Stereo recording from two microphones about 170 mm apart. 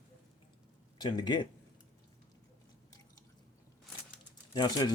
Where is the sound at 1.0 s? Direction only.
25° left (ahead or behind).